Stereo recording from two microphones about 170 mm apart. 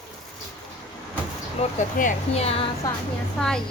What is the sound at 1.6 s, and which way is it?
Speech, 50° left (ahead or behind).